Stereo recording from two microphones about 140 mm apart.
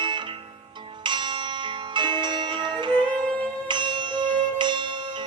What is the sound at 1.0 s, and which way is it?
Bell, 35° right (ahead or behind).